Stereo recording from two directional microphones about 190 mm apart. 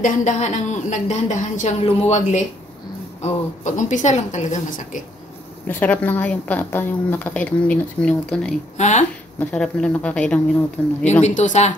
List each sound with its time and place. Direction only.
0.0 s speech: 40° left (ahead or behind)
5.7 s a woman's voice: 10° left (ahead or behind)
8.7 s speech: 40° left (ahead or behind)
9.4 s a woman's voice: 5° left (ahead or behind)
11.2 s speech: 40° left (ahead or behind)